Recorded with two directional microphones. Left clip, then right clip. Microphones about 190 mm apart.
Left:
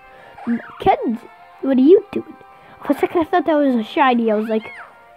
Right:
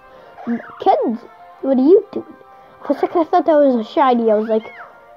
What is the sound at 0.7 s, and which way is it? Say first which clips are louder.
Speech: right 2 dB; 55° left (ahead or behind).